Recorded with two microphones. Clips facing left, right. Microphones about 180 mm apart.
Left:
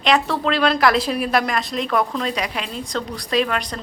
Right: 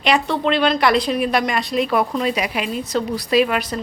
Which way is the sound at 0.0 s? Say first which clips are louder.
Right 1 dB; centre (ahead or behind).